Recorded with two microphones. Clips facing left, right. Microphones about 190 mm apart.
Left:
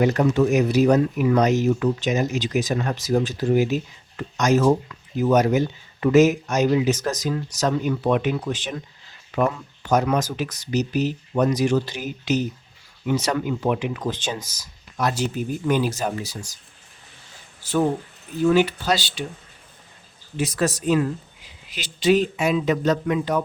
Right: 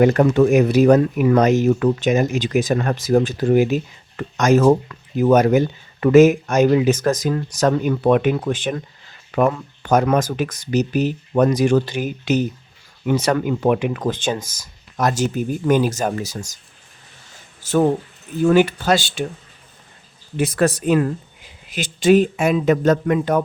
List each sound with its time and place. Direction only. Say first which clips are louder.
0.0 s speech: right 5 dB; 55° right (ahead or behind)
17.6 s speech: right 4 dB; 45° right (ahead or behind)
20.3 s speech: right 5 dB; 55° right (ahead or behind)